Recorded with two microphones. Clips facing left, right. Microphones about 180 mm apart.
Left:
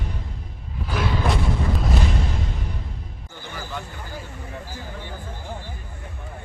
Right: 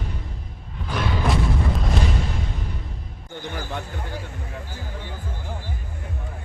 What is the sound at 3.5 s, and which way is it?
Basketball bounce, 60° right (ahead or behind).